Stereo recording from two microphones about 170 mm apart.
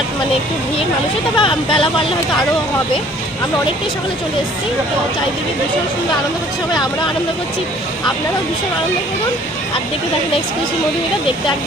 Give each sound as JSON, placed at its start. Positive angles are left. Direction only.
{"t": 1.4, "sound": "speech", "side_deg": 30}